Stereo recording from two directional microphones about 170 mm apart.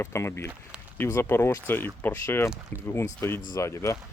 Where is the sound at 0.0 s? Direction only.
15° left (ahead or behind).